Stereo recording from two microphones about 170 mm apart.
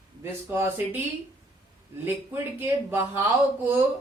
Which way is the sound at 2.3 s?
15° right (ahead or behind).